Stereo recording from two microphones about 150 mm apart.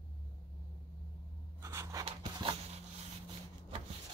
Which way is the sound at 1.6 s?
20° right (ahead or behind).